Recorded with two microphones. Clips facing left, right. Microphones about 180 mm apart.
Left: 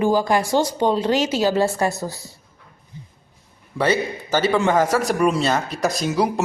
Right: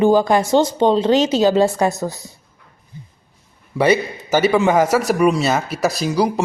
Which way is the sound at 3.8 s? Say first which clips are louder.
Right 4 dB; 10° right (ahead or behind).